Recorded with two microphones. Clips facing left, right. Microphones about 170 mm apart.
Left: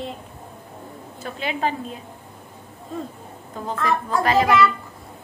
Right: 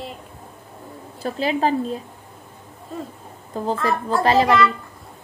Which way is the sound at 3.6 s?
35° right (ahead or behind).